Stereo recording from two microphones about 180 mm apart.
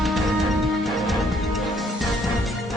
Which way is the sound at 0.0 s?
Centre (ahead or behind).